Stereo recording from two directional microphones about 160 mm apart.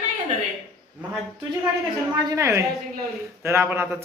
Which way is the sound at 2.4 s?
15° right (ahead or behind).